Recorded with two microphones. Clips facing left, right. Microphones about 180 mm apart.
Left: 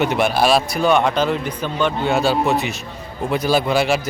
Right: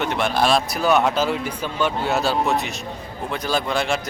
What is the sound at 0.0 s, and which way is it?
A man's voice, 10° left (ahead or behind).